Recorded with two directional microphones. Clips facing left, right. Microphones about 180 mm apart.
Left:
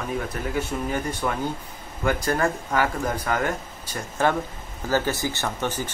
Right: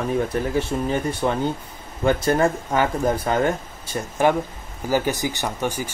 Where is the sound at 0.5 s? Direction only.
25° right (ahead or behind).